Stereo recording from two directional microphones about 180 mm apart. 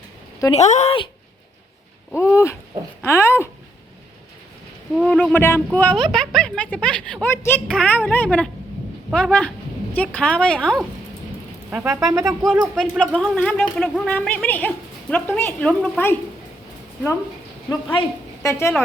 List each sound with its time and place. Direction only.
0.5 s speech: 40° left (ahead or behind)
2.1 s speech: 15° left (ahead or behind)
4.9 s a woman's voice: 5° left (ahead or behind)
11.7 s speech: 10° right (ahead or behind)
12.4 s speech: 5° left (ahead or behind)
18.4 s speech: 15° left (ahead or behind)